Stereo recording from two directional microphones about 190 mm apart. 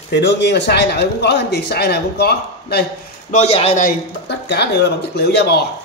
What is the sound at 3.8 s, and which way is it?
Speech, 55° left (ahead or behind).